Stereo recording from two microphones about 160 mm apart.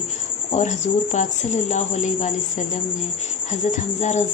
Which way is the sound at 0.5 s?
50° left (ahead or behind).